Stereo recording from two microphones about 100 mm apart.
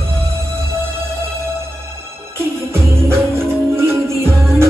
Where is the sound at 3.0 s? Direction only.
25° right (ahead or behind).